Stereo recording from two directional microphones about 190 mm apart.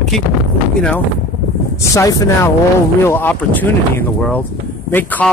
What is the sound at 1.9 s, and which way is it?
Speech, 20° left (ahead or behind).